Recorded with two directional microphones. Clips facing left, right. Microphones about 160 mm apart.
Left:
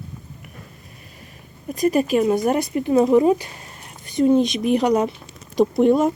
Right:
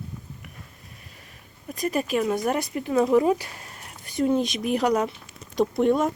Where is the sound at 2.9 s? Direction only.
20° left (ahead or behind).